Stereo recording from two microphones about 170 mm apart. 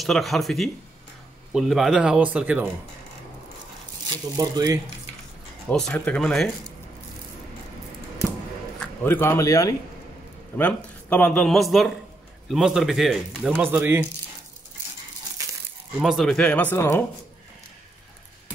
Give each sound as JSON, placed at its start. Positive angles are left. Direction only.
{"t": 0.0, "sound": "speech", "side_deg": 0}
{"t": 4.1, "sound": "speech", "side_deg": -20}
{"t": 5.7, "sound": "speech", "side_deg": 5}
{"t": 8.7, "sound": "a man's voice", "side_deg": 10}
{"t": 13.6, "sound": "speech", "side_deg": -15}
{"t": 16.0, "sound": "speech", "side_deg": 0}